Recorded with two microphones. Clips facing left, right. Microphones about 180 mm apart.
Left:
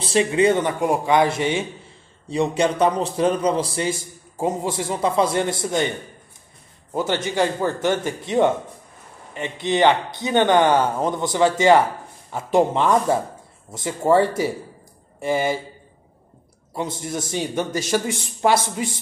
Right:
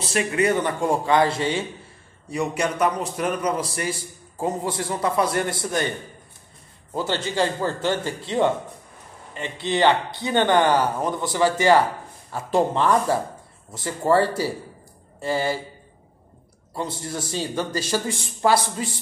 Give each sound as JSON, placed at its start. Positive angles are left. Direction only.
{"t": 0.0, "sound": "a man's voice", "side_deg": 25}
{"t": 0.7, "sound": "a man's voice", "side_deg": 15}
{"t": 16.7, "sound": "a man's voice", "side_deg": 20}